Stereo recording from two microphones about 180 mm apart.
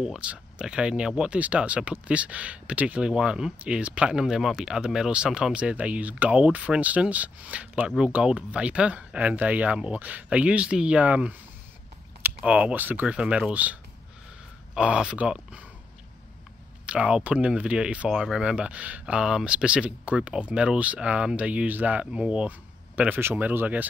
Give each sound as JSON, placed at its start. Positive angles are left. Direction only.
{"t": 0.0, "sound": "speech", "side_deg": -5}
{"t": 16.8, "sound": "speech", "side_deg": -5}